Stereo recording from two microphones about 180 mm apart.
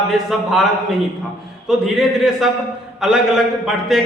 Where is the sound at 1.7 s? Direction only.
Centre (ahead or behind).